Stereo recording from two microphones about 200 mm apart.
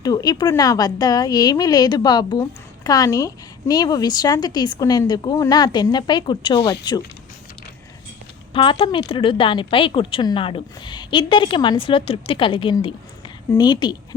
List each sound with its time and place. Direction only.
0.0 s speech: 20° left (ahead or behind)
8.5 s speech: 25° left (ahead or behind)